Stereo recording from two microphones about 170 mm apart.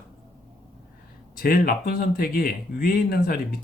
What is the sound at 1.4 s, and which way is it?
Speech, 60° left (ahead or behind).